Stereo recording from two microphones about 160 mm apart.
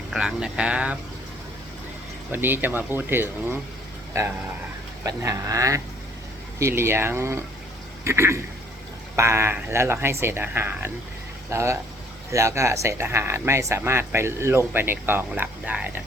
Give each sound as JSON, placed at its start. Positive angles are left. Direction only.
{"t": 0.1, "sound": "speech", "side_deg": -5}
{"t": 2.3, "sound": "speech", "side_deg": -10}